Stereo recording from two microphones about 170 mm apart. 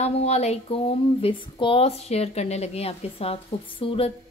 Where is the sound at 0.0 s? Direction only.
40° left (ahead or behind).